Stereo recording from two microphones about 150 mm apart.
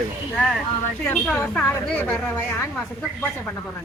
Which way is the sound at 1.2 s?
5° left (ahead or behind).